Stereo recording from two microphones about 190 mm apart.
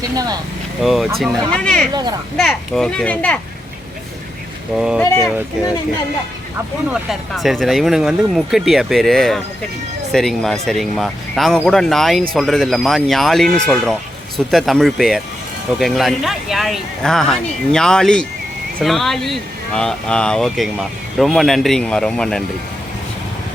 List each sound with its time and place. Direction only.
0.8 s speech: centre (ahead or behind)
1.9 s speech: 20° right (ahead or behind)
2.4 s speech: centre (ahead or behind)
4.8 s speech: 5° right (ahead or behind)
7.1 s speech: centre (ahead or behind)